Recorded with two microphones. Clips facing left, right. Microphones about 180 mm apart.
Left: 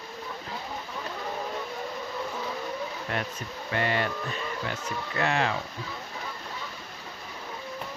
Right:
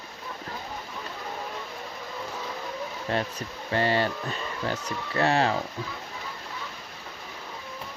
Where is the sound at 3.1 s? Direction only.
30° right (ahead or behind).